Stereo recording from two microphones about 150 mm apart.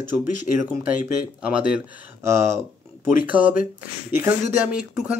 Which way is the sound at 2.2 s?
20° right (ahead or behind).